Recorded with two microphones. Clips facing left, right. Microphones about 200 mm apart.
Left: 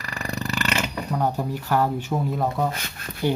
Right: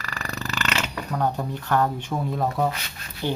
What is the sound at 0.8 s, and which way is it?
Speech, 10° left (ahead or behind).